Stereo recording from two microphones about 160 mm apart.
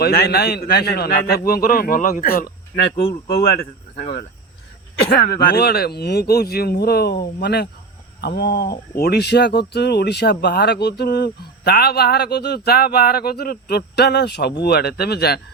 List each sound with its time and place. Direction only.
0.0 s a man's voice: 80° left
5.3 s speech: 80° left
14.6 s speech: 80° left